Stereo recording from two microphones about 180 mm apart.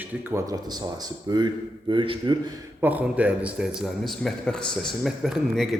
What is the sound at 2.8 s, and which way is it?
A man's voice, 10° right (ahead or behind).